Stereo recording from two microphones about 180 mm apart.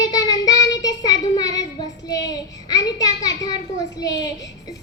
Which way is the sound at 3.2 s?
20° left (ahead or behind).